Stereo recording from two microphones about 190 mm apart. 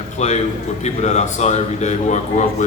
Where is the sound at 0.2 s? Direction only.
35° left (ahead or behind).